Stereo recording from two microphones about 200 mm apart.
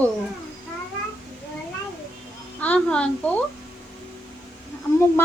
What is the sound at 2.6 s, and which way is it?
Speech, 5° left (ahead or behind).